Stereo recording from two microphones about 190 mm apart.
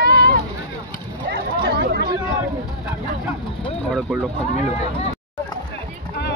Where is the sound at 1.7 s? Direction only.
55° right (ahead or behind).